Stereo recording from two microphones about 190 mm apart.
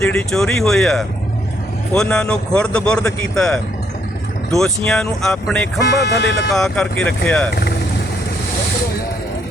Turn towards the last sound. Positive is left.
turn(degrees=5)  # may be behind; listen again after turning